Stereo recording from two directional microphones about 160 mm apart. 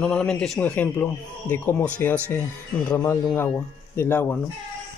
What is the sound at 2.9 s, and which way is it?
A man's voice, 25° left (ahead or behind).